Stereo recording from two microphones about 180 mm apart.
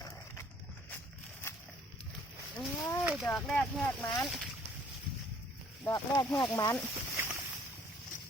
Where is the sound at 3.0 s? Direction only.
Centre (ahead or behind).